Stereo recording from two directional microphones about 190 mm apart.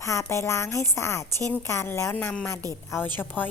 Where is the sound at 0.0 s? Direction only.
15° left (ahead or behind).